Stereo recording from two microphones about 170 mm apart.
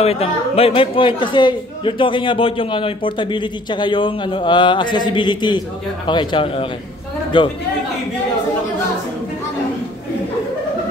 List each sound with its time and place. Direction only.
0.0 s a man's voice: 35° left (ahead or behind)